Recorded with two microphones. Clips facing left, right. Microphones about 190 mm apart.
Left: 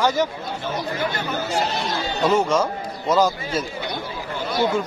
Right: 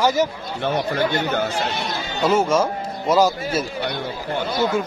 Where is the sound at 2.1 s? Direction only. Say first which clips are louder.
Right 1 dB; 5° right (ahead or behind).